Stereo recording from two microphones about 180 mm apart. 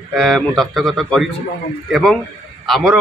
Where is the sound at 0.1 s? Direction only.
Centre (ahead or behind).